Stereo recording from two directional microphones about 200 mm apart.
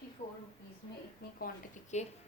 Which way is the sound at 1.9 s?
35° left (ahead or behind).